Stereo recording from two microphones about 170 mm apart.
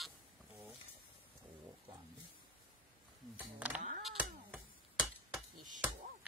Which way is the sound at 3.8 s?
45° right (ahead or behind).